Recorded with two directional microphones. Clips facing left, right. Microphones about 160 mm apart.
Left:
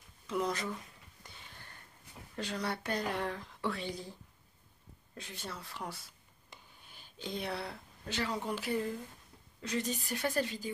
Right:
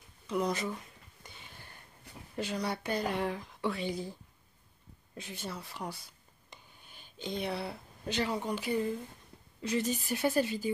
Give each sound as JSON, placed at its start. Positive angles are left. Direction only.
{"t": 0.3, "sound": "speech", "side_deg": 0}
{"t": 1.2, "sound": "a sound", "side_deg": 0}
{"t": 2.3, "sound": "speech", "side_deg": -10}
{"t": 5.1, "sound": "speech", "side_deg": 0}
{"t": 6.5, "sound": "a sound", "side_deg": 0}
{"t": 8.3, "sound": "a woman's voice", "side_deg": 0}